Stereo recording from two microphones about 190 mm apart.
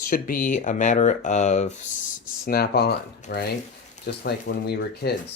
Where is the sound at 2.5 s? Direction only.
55° left (ahead or behind).